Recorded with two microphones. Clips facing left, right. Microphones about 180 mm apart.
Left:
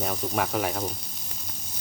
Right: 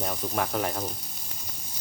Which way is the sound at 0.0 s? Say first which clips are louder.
Left 2 dB; centre (ahead or behind).